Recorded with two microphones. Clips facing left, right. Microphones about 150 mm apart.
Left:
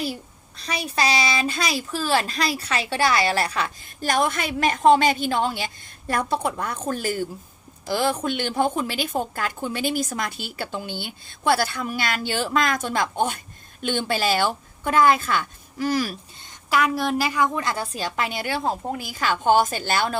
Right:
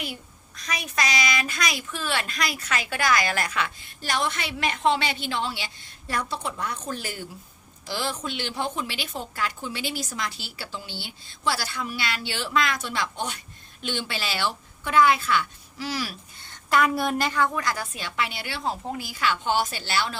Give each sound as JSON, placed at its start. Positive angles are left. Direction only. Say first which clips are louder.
{"t": 0.0, "sound": "a child's voice", "louder": "left 7 dB", "side_deg": 35}
{"t": 16.6, "sound": "a woman's voice", "louder": "left 1 dB", "side_deg": 0}
{"t": 17.5, "sound": "a woman's voice", "louder": "left 2 dB", "side_deg": 25}
{"t": 17.9, "sound": "a woman's voice", "louder": "left 4 dB", "side_deg": 40}